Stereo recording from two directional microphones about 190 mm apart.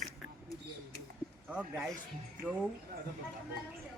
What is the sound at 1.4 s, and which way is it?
Speech, 5° right (ahead or behind).